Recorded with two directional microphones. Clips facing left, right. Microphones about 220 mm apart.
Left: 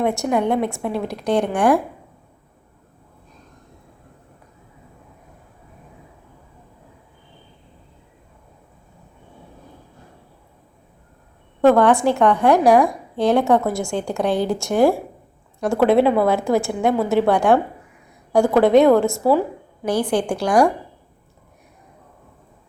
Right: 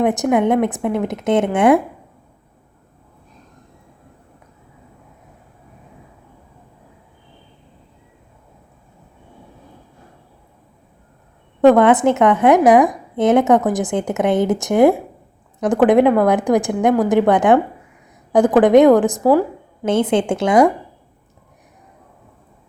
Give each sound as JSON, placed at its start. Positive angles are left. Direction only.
{"t": 0.0, "sound": "a woman's voice", "side_deg": -20}
{"t": 11.6, "sound": "a woman's voice", "side_deg": -20}